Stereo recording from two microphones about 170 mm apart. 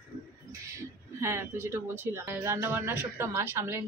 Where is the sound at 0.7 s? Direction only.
15° right (ahead or behind).